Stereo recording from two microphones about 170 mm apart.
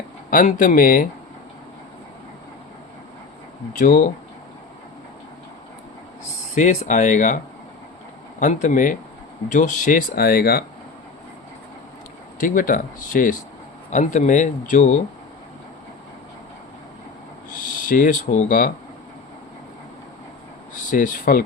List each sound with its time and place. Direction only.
0.3 s speech: 50° left (ahead or behind)
3.8 s speech: 50° left (ahead or behind)
6.5 s speech: 50° left (ahead or behind)
8.4 s speech: 45° left (ahead or behind); by 10.6 s 65° left (ahead or behind)
12.4 s speech: 50° left (ahead or behind)
17.5 s speech: 50° left (ahead or behind)
20.9 s speech: 50° left (ahead or behind)